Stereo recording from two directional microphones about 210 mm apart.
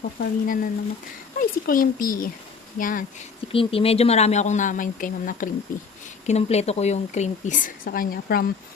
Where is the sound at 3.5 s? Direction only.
25° left (ahead or behind); by 8.5 s 45° left (ahead or behind).